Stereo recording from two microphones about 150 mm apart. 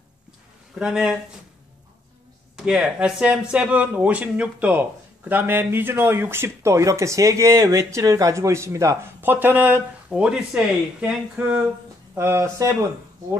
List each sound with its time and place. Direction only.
0.7 s speech: 5° right (ahead or behind)
2.5 s speech: 5° right (ahead or behind); by 12.7 s 20° right (ahead or behind)